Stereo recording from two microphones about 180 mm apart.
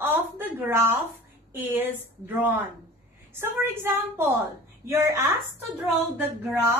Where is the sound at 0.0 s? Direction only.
10° right (ahead or behind).